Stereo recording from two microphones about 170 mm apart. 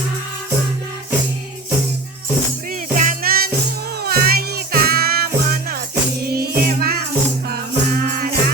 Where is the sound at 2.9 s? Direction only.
50° right (ahead or behind).